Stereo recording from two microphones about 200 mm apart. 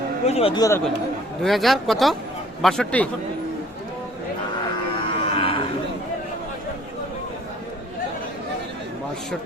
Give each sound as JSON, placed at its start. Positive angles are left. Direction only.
{"t": 0.3, "sound": "speech", "side_deg": 30}
{"t": 1.4, "sound": "speech", "side_deg": 0}
{"t": 5.1, "sound": "cattle", "side_deg": 30}